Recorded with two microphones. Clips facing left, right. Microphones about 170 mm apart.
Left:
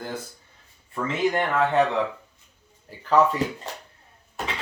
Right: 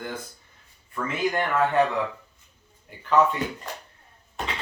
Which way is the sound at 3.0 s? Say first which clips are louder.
Left 1 dB; 35° left (ahead or behind).